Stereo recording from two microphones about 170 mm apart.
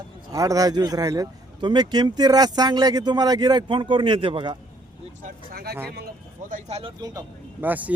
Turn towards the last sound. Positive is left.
turn(degrees=-10)  # may be behind; listen again after turning